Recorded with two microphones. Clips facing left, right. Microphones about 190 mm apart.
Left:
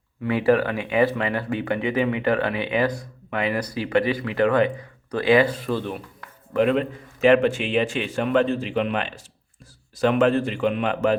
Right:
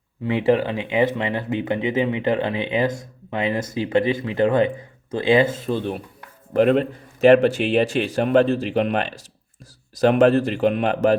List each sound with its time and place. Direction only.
0.3 s speech: 20° right (ahead or behind)
6.5 s speech: 40° right (ahead or behind)